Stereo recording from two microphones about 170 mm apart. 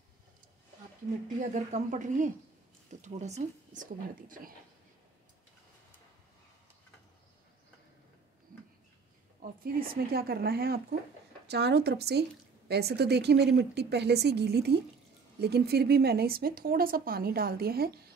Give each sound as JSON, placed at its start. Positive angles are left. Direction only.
{"t": 1.4, "sound": "speech", "side_deg": -45}
{"t": 9.4, "sound": "a woman's voice", "side_deg": -60}
{"t": 11.4, "sound": "a woman's voice", "side_deg": -75}